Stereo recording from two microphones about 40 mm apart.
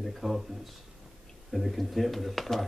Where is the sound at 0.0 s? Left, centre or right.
Centre.